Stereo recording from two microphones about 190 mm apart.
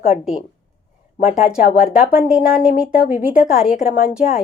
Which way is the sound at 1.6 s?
50° left (ahead or behind).